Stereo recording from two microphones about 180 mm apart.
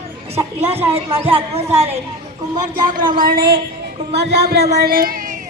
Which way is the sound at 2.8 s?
50° right (ahead or behind).